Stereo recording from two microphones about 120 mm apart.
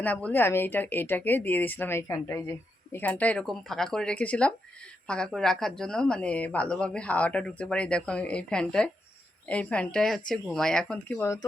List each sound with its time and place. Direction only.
0.0 s speech: 10° left (ahead or behind)